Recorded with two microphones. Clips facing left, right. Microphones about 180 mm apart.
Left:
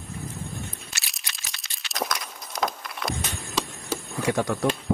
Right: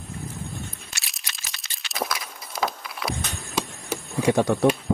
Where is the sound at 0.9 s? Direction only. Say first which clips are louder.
Even; centre (ahead or behind).